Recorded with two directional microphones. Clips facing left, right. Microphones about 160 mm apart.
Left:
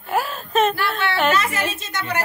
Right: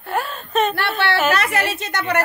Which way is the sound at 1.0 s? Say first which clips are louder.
Right 1 dB; 70° right (ahead or behind).